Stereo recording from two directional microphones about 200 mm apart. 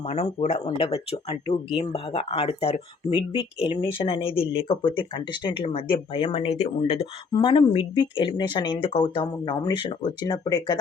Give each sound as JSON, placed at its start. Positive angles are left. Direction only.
{"t": 0.0, "sound": "speech", "side_deg": 30}